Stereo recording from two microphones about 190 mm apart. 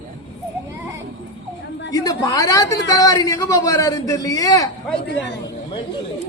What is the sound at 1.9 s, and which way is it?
A man's voice, 20° left (ahead or behind).